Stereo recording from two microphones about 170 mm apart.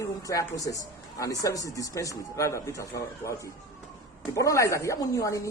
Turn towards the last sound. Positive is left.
turn(degrees=20)  # may be behind; listen again after turning